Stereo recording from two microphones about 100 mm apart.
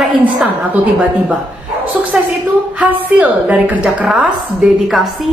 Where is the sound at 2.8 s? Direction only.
15° right (ahead or behind).